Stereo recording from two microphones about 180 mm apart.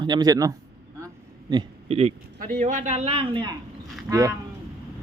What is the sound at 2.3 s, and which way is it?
A man's voice, 50° right (ahead or behind).